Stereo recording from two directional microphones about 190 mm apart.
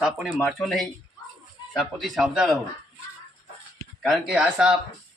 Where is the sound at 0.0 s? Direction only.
Centre (ahead or behind).